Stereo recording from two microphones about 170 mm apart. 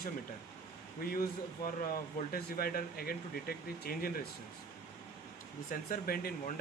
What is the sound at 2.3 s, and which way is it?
Speech, 60° left (ahead or behind).